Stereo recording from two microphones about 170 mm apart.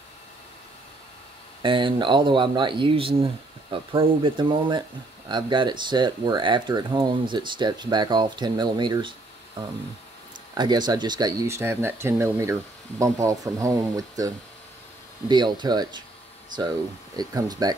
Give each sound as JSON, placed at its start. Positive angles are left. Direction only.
{"t": 1.6, "sound": "speech", "side_deg": -30}
{"t": 10.5, "sound": "speech", "side_deg": -25}
{"t": 17.2, "sound": "speech", "side_deg": -20}